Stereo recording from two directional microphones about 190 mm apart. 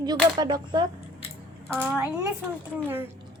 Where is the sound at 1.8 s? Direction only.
5° right (ahead or behind).